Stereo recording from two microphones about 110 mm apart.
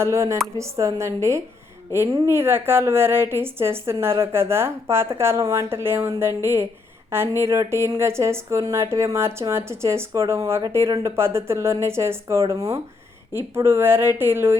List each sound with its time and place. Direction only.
0.0 s speech: 25° right (ahead or behind)